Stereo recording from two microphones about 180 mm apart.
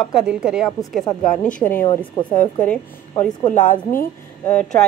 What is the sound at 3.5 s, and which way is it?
Speech, 45° left (ahead or behind).